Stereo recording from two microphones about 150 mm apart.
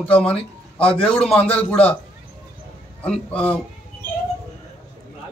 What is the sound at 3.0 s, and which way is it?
Speech, 10° left (ahead or behind).